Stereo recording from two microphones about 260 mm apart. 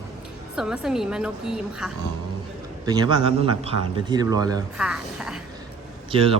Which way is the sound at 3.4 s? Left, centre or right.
Centre.